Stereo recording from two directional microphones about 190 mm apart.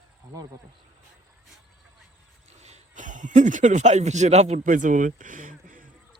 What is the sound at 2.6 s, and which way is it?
Speech, 40° right (ahead or behind).